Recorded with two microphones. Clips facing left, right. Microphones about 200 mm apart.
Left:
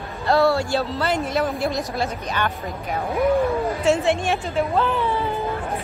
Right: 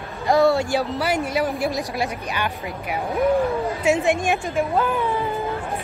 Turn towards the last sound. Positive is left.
turn(degrees=-10)  # may be behind; listen again after turning